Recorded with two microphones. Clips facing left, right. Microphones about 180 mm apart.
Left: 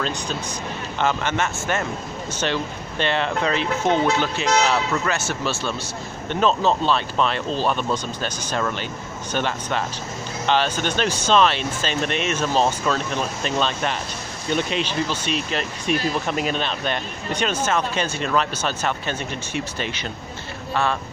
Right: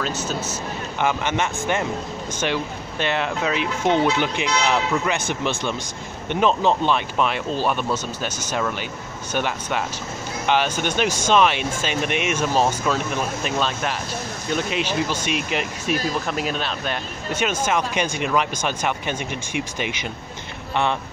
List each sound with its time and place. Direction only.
0.0 s speech: 5° right (ahead or behind)
16.3 s speech: centre (ahead or behind)